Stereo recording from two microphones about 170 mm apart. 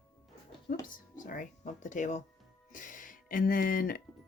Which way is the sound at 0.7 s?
55° left (ahead or behind).